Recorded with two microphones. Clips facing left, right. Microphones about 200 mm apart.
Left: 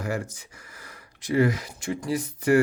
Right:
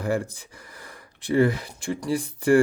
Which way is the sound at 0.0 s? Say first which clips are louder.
Right 4 dB; 35° right (ahead or behind).